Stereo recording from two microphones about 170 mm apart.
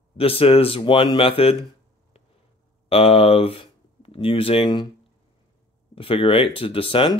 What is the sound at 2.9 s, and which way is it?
Speech, 35° left (ahead or behind).